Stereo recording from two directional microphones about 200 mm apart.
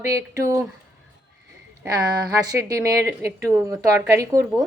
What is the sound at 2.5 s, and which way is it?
A woman's voice, 15° right (ahead or behind).